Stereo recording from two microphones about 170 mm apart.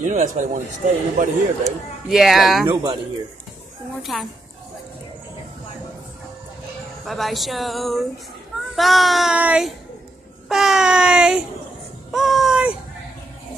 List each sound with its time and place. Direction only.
0.0 s a man's voice: 45° right (ahead or behind)
1.6 s speech: centre (ahead or behind)
2.7 s speech: 25° right (ahead or behind)
4.0 s speech: centre (ahead or behind)
7.1 s speech: centre (ahead or behind)
12.1 s baby cry: centre (ahead or behind)